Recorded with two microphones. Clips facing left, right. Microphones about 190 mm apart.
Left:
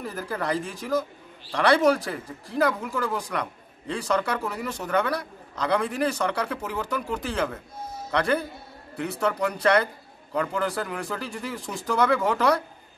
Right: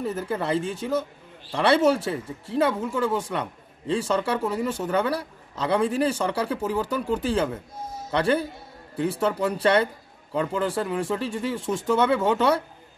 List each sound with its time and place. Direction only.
0.0 s speech: 25° right (ahead or behind)